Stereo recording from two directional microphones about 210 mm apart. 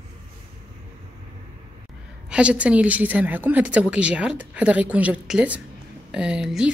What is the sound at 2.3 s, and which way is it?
Speech, 5° right (ahead or behind).